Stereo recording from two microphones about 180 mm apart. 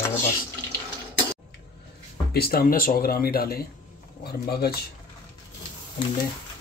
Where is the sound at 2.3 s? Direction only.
55° left (ahead or behind).